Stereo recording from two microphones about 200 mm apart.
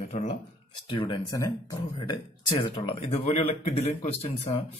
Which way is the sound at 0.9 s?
20° left (ahead or behind).